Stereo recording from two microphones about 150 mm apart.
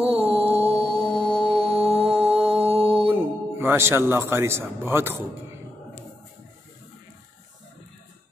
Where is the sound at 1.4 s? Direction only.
35° right (ahead or behind).